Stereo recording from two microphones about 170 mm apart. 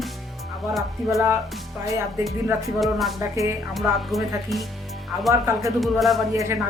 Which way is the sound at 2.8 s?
Centre (ahead or behind).